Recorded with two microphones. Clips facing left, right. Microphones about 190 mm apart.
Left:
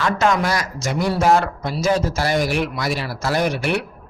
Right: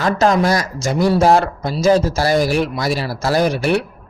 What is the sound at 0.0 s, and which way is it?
A man's voice, 35° right (ahead or behind).